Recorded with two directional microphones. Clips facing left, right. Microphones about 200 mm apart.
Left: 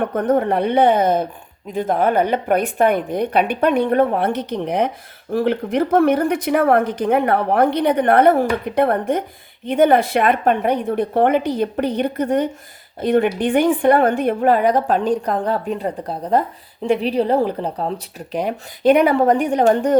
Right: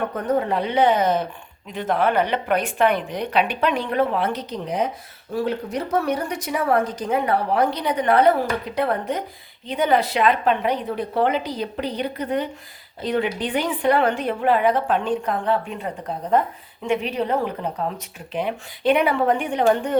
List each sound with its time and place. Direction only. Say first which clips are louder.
0.0 s a woman's voice: left 5 dB; 50° left (ahead or behind)